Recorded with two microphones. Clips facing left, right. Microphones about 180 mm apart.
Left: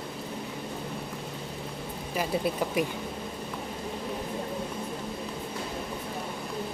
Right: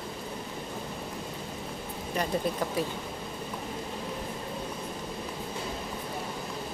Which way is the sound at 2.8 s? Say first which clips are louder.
Left 3 dB; 15° left (ahead or behind).